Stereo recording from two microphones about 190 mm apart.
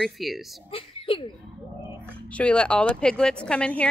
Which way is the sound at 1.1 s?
30° left (ahead or behind).